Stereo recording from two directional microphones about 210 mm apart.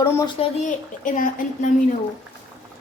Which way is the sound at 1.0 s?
40° left (ahead or behind).